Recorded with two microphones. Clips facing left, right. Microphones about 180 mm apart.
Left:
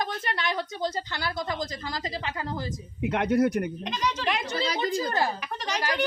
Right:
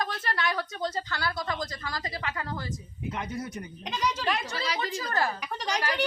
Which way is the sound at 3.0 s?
70° left (ahead or behind).